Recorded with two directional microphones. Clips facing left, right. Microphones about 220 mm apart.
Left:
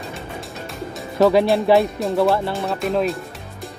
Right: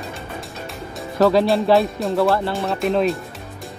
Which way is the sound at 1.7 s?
Centre (ahead or behind).